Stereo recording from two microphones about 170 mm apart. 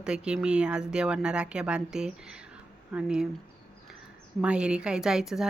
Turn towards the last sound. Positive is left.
turn(degrees=0)  # may be behind; listen again after turning